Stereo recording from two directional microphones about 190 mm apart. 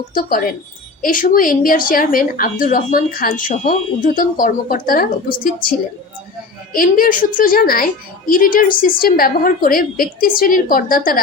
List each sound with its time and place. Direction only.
0.1 s a woman's voice: 50° left (ahead or behind)
6.7 s a woman's voice: 50° left (ahead or behind)